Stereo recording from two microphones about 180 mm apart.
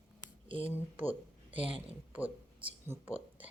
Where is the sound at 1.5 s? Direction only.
10° right (ahead or behind).